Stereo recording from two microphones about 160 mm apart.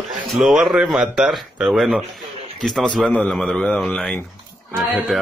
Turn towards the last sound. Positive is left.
turn(degrees=0)  # may be behind; listen again after turning